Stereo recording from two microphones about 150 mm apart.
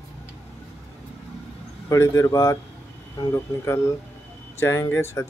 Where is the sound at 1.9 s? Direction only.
20° left (ahead or behind).